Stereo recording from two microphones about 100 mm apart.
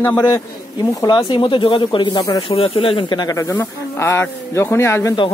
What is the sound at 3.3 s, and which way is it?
A man's voice, 35° left (ahead or behind).